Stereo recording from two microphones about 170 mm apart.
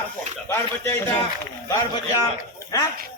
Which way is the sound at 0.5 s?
15° left (ahead or behind).